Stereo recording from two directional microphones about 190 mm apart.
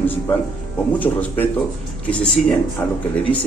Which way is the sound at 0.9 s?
10° left (ahead or behind).